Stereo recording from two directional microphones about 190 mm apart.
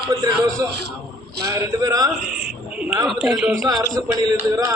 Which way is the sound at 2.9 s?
5° right (ahead or behind).